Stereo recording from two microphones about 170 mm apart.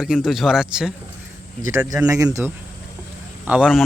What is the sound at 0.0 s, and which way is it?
Speech, 5° right (ahead or behind).